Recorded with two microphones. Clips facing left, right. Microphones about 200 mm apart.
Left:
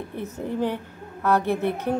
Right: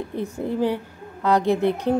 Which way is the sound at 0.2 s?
10° right (ahead or behind).